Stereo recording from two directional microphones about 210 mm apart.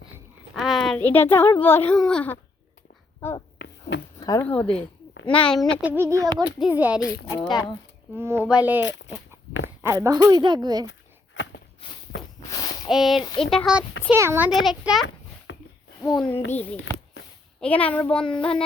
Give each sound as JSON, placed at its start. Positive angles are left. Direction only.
{"t": 0.1, "sound": "a woman's voice", "side_deg": -5}
{"t": 3.6, "sound": "a sound", "side_deg": 55}
{"t": 4.2, "sound": "a sound", "side_deg": 15}
{"t": 4.4, "sound": "a child's voice", "side_deg": 5}
{"t": 5.8, "sound": "speech", "side_deg": -10}
{"t": 8.1, "sound": "speech", "side_deg": -10}
{"t": 8.8, "sound": "dog", "side_deg": 60}
{"t": 9.8, "sound": "a woman's voice", "side_deg": -15}
{"t": 11.4, "sound": "walk", "side_deg": 60}
{"t": 12.5, "sound": "a sound", "side_deg": 20}
{"t": 12.9, "sound": "a child's voice", "side_deg": 0}
{"t": 15.5, "sound": "a sound", "side_deg": 60}
{"t": 16.0, "sound": "a child's voice", "side_deg": 0}
{"t": 17.6, "sound": "a child's voice", "side_deg": 5}